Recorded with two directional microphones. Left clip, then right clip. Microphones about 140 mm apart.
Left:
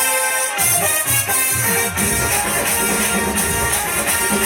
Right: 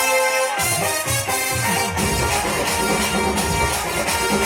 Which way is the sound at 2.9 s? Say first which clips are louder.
Even; 20° right (ahead or behind).